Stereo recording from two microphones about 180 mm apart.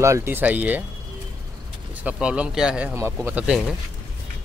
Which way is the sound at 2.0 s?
5° right (ahead or behind).